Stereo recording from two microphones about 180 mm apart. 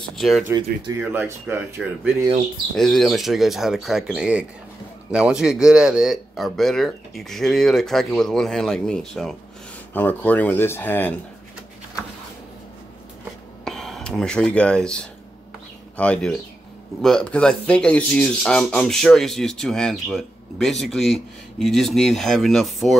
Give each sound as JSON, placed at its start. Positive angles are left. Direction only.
{"t": 0.1, "sound": "speech", "side_deg": 0}
{"t": 0.9, "sound": "speech", "side_deg": -10}
{"t": 13.7, "sound": "speech", "side_deg": 0}
{"t": 16.0, "sound": "speech", "side_deg": 5}